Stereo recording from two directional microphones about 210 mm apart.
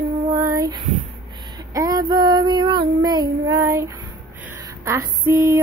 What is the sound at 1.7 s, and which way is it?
Child singing, 15° right (ahead or behind).